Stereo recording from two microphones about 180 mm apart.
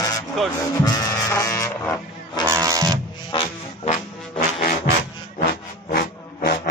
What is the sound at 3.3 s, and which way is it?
Music, 30° left (ahead or behind).